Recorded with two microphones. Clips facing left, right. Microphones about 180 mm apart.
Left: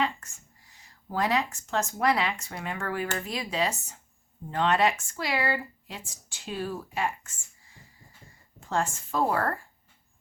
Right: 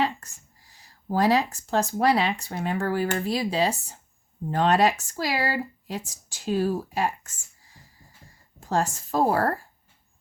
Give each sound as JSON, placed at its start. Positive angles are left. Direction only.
{"t": 0.0, "sound": "speech", "side_deg": -35}